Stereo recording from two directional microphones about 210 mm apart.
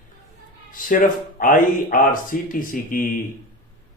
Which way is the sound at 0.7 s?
40° left (ahead or behind).